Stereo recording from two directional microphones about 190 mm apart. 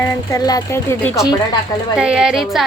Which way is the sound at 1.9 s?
5° right (ahead or behind).